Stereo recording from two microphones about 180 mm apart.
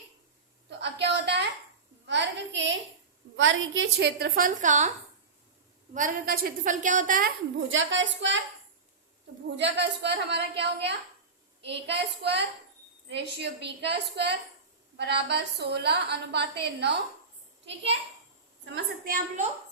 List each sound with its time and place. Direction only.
0.8 s a sound: 70° right (ahead or behind)
2.0 s a sound: 80° right
3.3 s a woman's voice: 90° right; by 4.9 s 45° right (ahead or behind)
5.9 s a woman's voice: 50° right (ahead or behind)
7.7 s a woman's voice: 90° right
9.6 s a woman's voice: 75° right (ahead or behind)
19.0 s a woman's voice: 50° right (ahead or behind)